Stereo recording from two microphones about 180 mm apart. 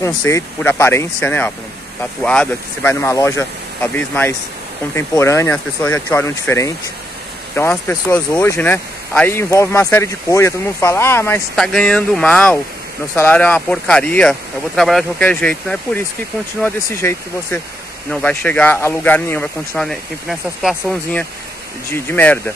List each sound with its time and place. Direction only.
0.0 s speech: 10° left (ahead or behind)
11.5 s speech: 5° left (ahead or behind)